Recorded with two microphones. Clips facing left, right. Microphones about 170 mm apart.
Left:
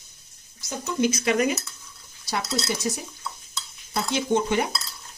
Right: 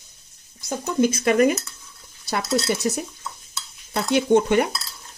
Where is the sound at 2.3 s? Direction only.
60° right (ahead or behind).